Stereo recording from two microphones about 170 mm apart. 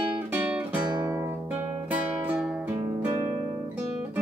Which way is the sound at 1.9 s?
5° right (ahead or behind).